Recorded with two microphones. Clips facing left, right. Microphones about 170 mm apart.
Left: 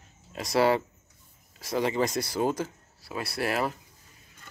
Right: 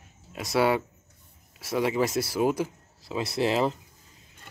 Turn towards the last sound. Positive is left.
turn(degrees=-20)  # may be behind; listen again after turning